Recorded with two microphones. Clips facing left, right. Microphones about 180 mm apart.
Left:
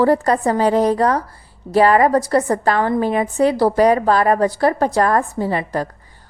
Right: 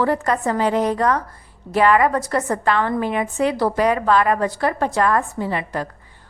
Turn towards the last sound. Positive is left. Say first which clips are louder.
# left 4 dB
turn(degrees=35)  # may be behind; listen again after turning